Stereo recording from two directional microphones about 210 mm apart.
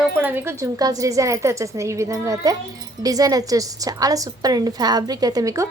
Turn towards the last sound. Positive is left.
turn(degrees=-15)  # may be behind; listen again after turning